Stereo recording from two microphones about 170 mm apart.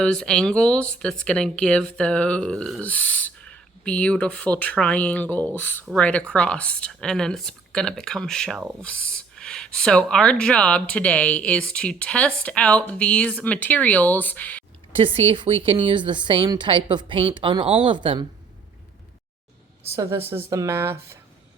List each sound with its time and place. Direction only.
0.0 s speech: 5° left (ahead or behind)
14.9 s speech: 30° right (ahead or behind)
20.0 s speech: 15° right (ahead or behind)